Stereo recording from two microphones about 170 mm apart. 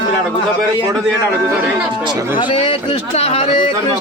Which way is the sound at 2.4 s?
30° left (ahead or behind).